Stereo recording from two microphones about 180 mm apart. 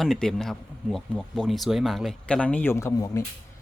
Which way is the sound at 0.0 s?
Centre (ahead or behind).